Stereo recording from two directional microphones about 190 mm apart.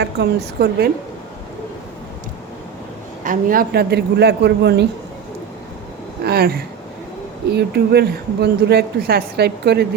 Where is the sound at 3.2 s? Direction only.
45° right (ahead or behind); by 4.8 s 60° right (ahead or behind).